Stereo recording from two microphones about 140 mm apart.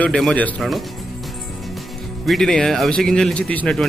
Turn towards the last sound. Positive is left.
turn(degrees=5)  # may be behind; listen again after turning